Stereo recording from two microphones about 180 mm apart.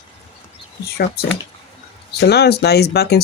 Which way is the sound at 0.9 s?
60° left (ahead or behind).